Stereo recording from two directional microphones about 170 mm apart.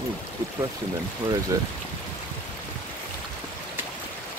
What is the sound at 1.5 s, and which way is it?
Speech, 20° right (ahead or behind).